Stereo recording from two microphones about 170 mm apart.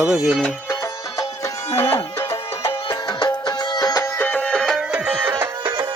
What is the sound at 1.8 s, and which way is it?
Music, 20° left (ahead or behind).